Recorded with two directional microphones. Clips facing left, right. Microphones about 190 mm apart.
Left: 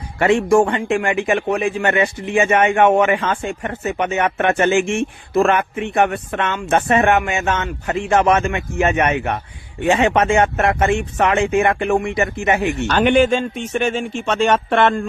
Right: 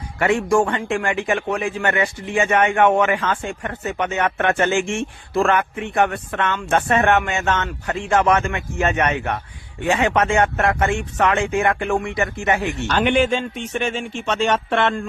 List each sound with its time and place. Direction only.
0.2 s a man's voice: 25° left (ahead or behind)
12.9 s speech: 45° left (ahead or behind)